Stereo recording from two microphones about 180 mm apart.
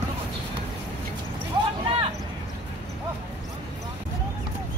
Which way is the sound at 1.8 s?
30° right (ahead or behind).